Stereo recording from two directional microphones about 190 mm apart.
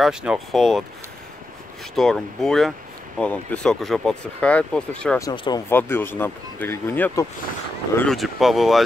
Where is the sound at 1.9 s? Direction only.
Centre (ahead or behind).